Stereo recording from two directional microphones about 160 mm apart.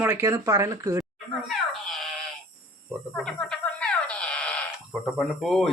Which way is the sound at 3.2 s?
5° left (ahead or behind).